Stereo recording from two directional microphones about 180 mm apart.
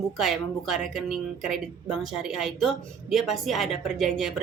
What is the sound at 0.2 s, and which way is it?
Speech, centre (ahead or behind).